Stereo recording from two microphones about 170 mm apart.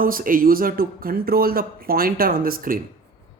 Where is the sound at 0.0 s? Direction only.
55° right (ahead or behind).